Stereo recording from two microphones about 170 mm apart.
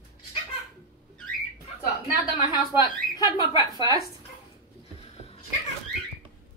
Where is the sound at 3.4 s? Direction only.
20° right (ahead or behind).